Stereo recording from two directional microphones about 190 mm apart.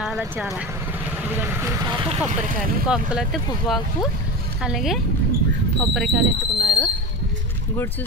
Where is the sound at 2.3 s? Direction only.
45° right (ahead or behind).